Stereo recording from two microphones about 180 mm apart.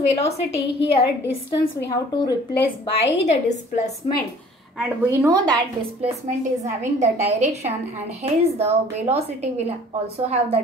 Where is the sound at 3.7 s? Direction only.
40° left (ahead or behind).